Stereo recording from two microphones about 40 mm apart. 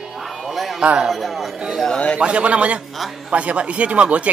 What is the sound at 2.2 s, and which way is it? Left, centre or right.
A man's voice, right.